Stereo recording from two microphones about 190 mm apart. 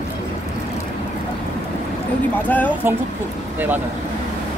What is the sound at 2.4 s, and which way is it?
Speech, 10° left (ahead or behind).